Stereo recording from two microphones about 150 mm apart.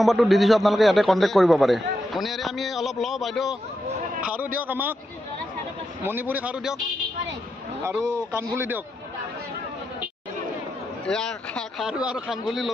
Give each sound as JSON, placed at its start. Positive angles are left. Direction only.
{"t": 0.0, "sound": "a man's voice", "side_deg": 0}
{"t": 4.6, "sound": "a man's voice", "side_deg": -10}
{"t": 6.0, "sound": "a man's voice", "side_deg": -10}
{"t": 8.0, "sound": "a man's voice", "side_deg": -20}
{"t": 11.1, "sound": "a man's voice", "side_deg": 5}